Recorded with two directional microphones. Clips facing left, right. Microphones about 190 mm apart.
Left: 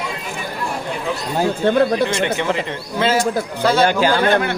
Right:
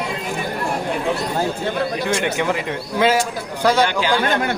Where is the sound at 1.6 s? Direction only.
55° left (ahead or behind).